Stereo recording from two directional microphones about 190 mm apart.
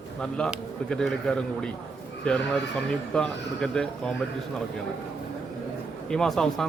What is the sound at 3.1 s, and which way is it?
A man's voice, 5° left (ahead or behind).